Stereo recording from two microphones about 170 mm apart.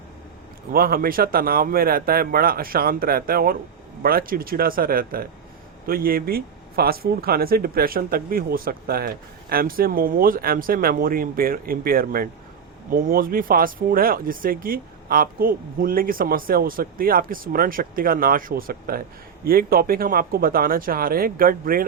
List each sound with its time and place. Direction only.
0.7 s speech: 60° right (ahead or behind)